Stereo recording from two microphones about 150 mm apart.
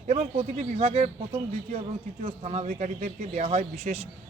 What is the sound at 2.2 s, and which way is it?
Speech, 45° right (ahead or behind).